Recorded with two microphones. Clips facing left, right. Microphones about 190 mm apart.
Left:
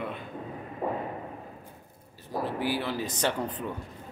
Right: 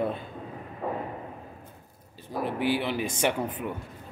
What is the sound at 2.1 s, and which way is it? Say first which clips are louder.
Speech: right 1 dB; 20° right (ahead or behind).